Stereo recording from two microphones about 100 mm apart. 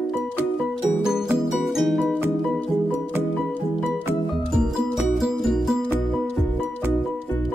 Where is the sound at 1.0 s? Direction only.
5° right (ahead or behind).